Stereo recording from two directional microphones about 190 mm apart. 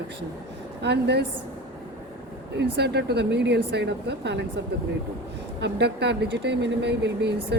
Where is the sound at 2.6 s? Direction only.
60° right (ahead or behind).